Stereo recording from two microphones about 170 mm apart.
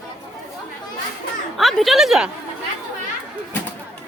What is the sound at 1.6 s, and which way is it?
Speech, centre (ahead or behind).